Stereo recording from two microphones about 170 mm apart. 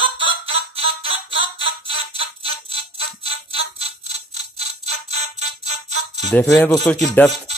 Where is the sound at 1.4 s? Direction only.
35° right (ahead or behind).